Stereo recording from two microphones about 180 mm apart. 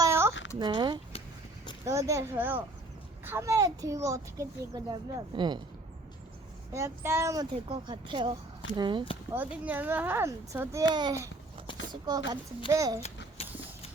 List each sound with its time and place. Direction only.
0.0 s a sound: 15° right (ahead or behind)
0.5 s a child's voice: 25° right (ahead or behind)
6.7 s speech: 15° right (ahead or behind)
7.7 s a child's voice: 25° right (ahead or behind)
9.3 s a child's voice: 10° right (ahead or behind)
13.4 s mechanisms: 35° left (ahead or behind)